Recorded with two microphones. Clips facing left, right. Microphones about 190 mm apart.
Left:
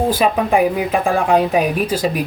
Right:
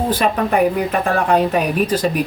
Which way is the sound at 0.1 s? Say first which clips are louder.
Left 2 dB; 5° left (ahead or behind).